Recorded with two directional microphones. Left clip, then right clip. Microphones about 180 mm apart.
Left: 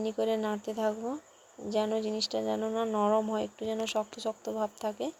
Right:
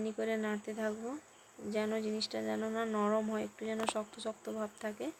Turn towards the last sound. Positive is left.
turn(degrees=15)  # may be behind; listen again after turning